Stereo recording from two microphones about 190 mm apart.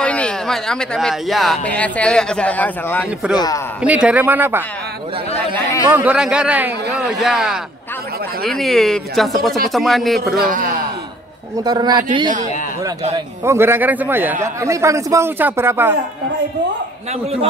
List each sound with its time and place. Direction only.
0.0 s speech: 5° left (ahead or behind)
3.3 s a man's voice: 20° left (ahead or behind)
3.8 s a man's voice: 5° right (ahead or behind)
5.9 s speech: 10° right (ahead or behind)
10.3 s a man's voice: 45° right (ahead or behind)
11.6 s a man's voice: 20° right (ahead or behind)
13.4 s a man's voice: 15° right (ahead or behind)
17.1 s a man's voice: 30° right (ahead or behind)